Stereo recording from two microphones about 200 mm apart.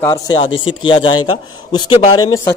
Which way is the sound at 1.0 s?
90° left.